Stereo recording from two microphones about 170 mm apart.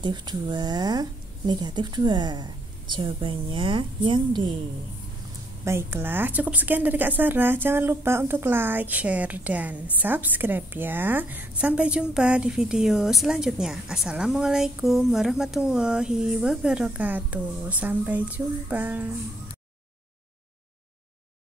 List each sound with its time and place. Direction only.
0.0 s speech: 25° right (ahead or behind)
5.7 s a woman's voice: 15° right (ahead or behind)